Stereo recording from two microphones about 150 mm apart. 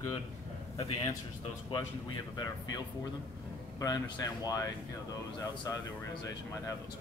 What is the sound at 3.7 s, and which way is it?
Speech, 25° left (ahead or behind).